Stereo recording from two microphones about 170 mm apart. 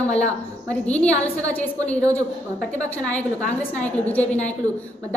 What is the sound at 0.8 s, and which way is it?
A woman's voice, 10° left (ahead or behind).